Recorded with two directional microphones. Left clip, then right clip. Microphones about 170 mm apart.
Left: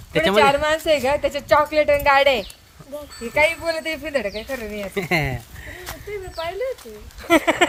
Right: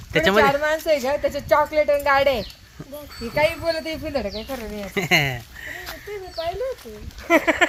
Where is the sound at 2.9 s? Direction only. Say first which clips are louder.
Left 3 dB; centre (ahead or behind); by 4.6 s 20° left (ahead or behind).